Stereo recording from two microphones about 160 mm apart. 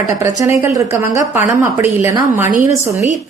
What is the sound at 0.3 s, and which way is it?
A woman's voice, 15° right (ahead or behind).